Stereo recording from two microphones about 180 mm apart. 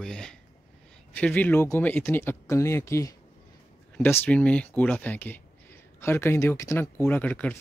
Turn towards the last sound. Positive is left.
turn(degrees=5)  # may be behind; listen again after turning